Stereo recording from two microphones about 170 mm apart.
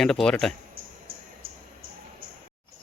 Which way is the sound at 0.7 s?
60° right (ahead or behind).